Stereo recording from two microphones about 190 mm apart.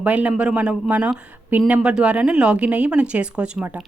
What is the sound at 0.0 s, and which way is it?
A woman's voice, 5° right (ahead or behind).